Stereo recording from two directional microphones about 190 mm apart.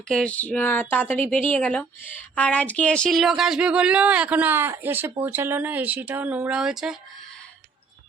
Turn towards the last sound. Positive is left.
turn(degrees=-5)  # may be behind; listen again after turning